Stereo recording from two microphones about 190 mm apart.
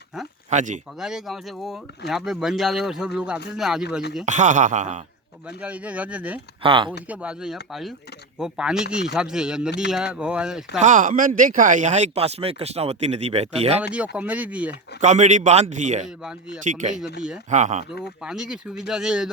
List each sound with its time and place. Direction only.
0.5 s speech: 40° right (ahead or behind)
0.9 s speech: centre (ahead or behind)
4.3 s speech: 40° right (ahead or behind)
5.5 s speech: 5° right (ahead or behind)
6.6 s speech: 25° right (ahead or behind)
7.1 s speech: 5° right (ahead or behind)
10.8 s speech: 40° right (ahead or behind)
13.9 s speech: 5° right (ahead or behind)
15.0 s speech: 40° right (ahead or behind)
16.0 s speech: 5° right (ahead or behind)
16.6 s speech: 40° right (ahead or behind)
18.2 s speech: 5° right (ahead or behind)